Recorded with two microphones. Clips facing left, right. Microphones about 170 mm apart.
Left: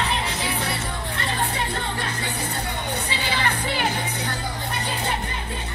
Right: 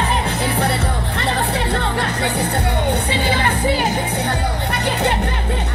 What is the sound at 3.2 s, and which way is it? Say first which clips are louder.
Music: right 6 dB; 50° right (ahead or behind).